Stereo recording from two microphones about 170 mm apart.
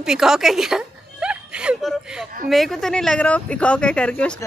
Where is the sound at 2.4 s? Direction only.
Centre (ahead or behind).